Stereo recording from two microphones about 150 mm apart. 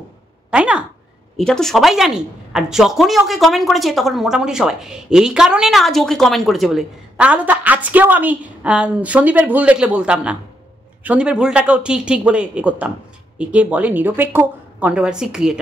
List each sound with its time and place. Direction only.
0.5 s speech: 5° right (ahead or behind)
1.4 s a woman's voice: 5° left (ahead or behind)